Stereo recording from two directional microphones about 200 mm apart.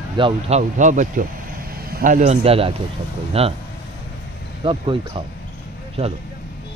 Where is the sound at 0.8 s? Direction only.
40° right (ahead or behind).